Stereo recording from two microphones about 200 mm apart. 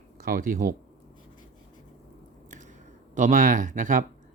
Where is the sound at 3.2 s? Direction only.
40° right (ahead or behind).